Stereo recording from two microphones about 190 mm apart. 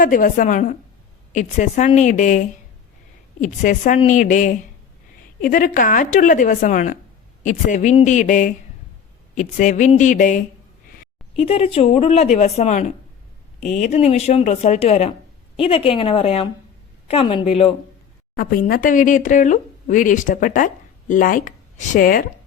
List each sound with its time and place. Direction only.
0.0 s a woman's voice: 45° left (ahead or behind)
11.3 s a woman's voice: 30° left (ahead or behind)
18.3 s speech: 50° left (ahead or behind)